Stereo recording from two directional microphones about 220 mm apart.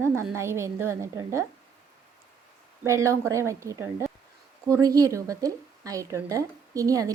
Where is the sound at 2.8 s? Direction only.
15° right (ahead or behind).